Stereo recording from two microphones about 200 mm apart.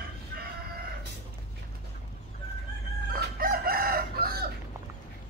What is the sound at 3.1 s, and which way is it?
Chicken, 45° right (ahead or behind).